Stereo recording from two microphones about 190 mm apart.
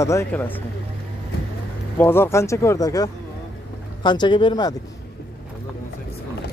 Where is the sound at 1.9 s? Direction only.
10° left (ahead or behind).